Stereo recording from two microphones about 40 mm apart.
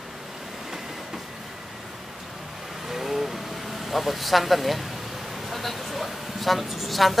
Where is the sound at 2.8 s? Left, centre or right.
Centre.